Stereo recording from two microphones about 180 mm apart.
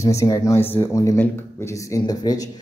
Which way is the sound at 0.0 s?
15° left (ahead or behind).